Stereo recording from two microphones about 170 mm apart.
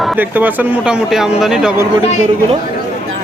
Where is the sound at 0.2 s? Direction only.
10° right (ahead or behind).